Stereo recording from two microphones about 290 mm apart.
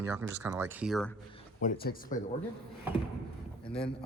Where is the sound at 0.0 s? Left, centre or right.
Centre.